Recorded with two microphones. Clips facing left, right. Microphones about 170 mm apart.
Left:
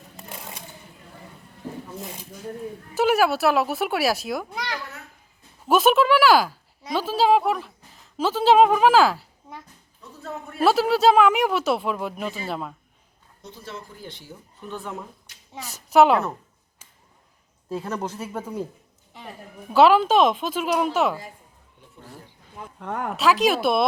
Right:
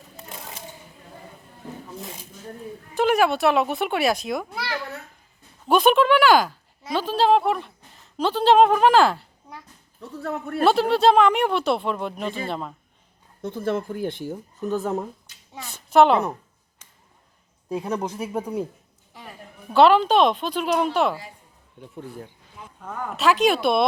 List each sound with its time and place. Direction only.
2.9 s speech: 5° left (ahead or behind)
5.6 s speech: 5° left (ahead or behind)
10.0 s speech: 60° right (ahead or behind)
10.6 s speech: 5° left (ahead or behind)
13.4 s speech: 55° right (ahead or behind)
15.9 s speech: 5° left (ahead or behind)
17.7 s speech: 15° right (ahead or behind)
19.7 s speech: 5° left (ahead or behind)
22.8 s speech: 70° left (ahead or behind)
23.1 s speech: centre (ahead or behind)